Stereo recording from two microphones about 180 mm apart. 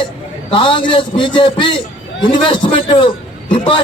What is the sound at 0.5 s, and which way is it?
A man's voice, 25° left (ahead or behind).